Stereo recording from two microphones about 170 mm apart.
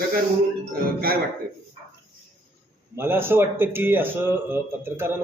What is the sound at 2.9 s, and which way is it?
A man's voice, 15° right (ahead or behind).